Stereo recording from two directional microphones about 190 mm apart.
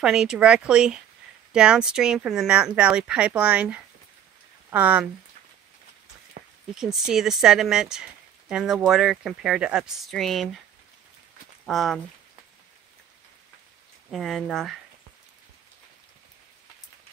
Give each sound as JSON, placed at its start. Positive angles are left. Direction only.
{"t": 0.0, "sound": "speech", "side_deg": 0}
{"t": 6.4, "sound": "a sound", "side_deg": -50}
{"t": 6.7, "sound": "speech", "side_deg": 0}
{"t": 11.6, "sound": "speech", "side_deg": 0}
{"t": 14.1, "sound": "speech", "side_deg": 0}